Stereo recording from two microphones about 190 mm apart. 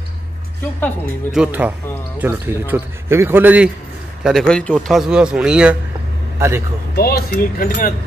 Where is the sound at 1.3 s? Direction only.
5° right (ahead or behind).